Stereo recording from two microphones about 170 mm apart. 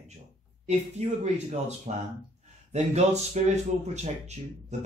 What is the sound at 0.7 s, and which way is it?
A man's voice, 40° right (ahead or behind).